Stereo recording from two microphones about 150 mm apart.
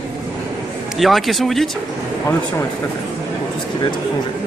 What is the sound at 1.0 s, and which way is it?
Speech, centre (ahead or behind).